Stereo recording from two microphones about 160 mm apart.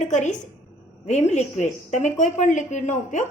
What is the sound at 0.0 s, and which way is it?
A woman's voice, 50° left (ahead or behind).